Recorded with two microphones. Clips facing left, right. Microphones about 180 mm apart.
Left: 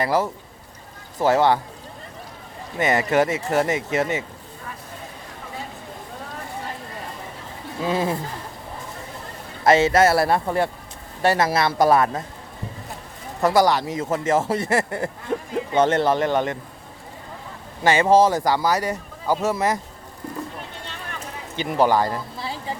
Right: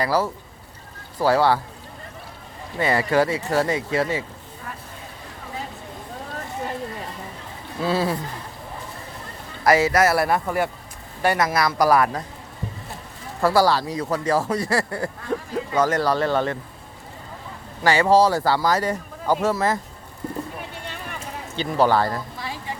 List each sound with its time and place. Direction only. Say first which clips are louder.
0.0 s speech: even; 20° left (ahead or behind)
2.7 s speech: even; 20° left (ahead or behind)
7.8 s speech: even; 15° left (ahead or behind)
9.6 s speech: left 2 dB; 25° left (ahead or behind)
13.4 s speech: even; 20° left (ahead or behind)
17.8 s speech: left 1 dB; 20° left (ahead or behind)
21.5 s speech: even; 15° left (ahead or behind)